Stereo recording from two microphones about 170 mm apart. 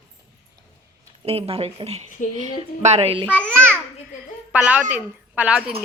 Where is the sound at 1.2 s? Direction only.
35° right (ahead or behind).